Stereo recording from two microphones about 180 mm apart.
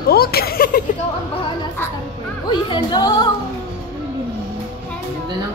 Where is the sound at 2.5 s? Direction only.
25° left (ahead or behind).